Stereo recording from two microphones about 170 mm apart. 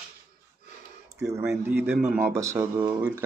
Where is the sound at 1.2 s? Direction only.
15° right (ahead or behind).